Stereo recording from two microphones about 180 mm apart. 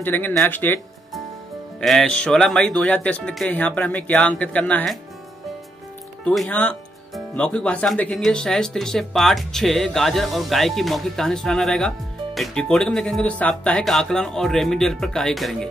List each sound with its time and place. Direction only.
0.0 s speech: 10° left (ahead or behind)
1.8 s speech: 5° left (ahead or behind)
6.2 s speech: 5° left (ahead or behind)